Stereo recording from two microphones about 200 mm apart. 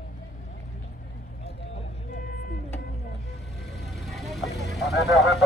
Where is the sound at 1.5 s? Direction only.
60° left (ahead or behind).